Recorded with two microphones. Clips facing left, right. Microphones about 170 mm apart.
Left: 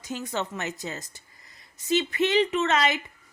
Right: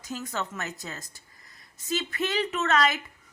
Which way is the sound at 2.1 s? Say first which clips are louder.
Left 5 dB; 20° left (ahead or behind).